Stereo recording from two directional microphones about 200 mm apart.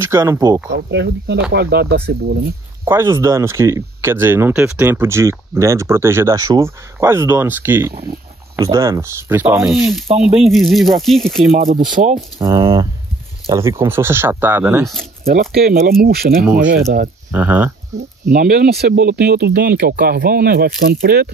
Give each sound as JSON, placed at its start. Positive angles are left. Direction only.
{"t": 0.1, "sound": "speech", "side_deg": -15}
{"t": 0.7, "sound": "speech", "side_deg": -60}
{"t": 2.8, "sound": "speech", "side_deg": -10}
{"t": 10.0, "sound": "speech", "side_deg": -30}
{"t": 10.4, "sound": "speech", "side_deg": 0}
{"t": 11.5, "sound": "speech", "side_deg": -40}
{"t": 12.4, "sound": "speech", "side_deg": -15}
{"t": 15.5, "sound": "speech", "side_deg": -50}
{"t": 17.3, "sound": "speech", "side_deg": -10}
{"t": 18.3, "sound": "speech", "side_deg": -50}